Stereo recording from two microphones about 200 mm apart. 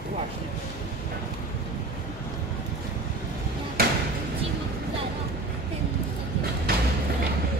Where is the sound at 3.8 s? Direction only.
50° right (ahead or behind).